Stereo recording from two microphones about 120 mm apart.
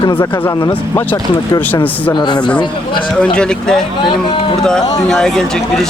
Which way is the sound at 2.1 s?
35° left (ahead or behind).